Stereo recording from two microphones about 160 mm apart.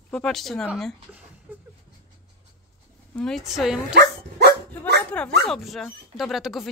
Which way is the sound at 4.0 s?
85° right.